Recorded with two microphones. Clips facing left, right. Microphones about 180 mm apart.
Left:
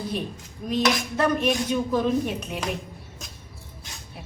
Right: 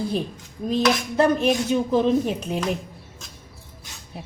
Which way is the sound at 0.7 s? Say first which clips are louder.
Right 2 dB; 30° right (ahead or behind).